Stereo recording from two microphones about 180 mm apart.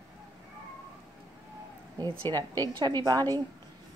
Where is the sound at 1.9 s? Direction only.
20° right (ahead or behind).